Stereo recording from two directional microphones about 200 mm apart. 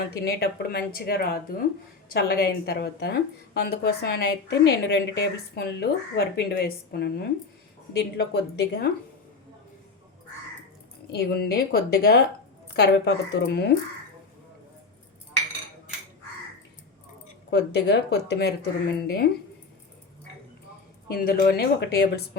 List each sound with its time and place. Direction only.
0.0 s a woman's voice: 50° left (ahead or behind)
11.1 s a woman's voice: 55° left (ahead or behind)
13.3 s speech: 55° left (ahead or behind)
17.5 s speech: 60° left (ahead or behind)
21.1 s a woman's voice: 45° left (ahead or behind)